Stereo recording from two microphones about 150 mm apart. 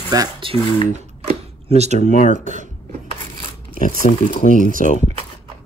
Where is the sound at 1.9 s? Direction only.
60° left (ahead or behind).